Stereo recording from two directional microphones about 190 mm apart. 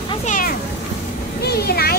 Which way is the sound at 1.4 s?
55° left (ahead or behind).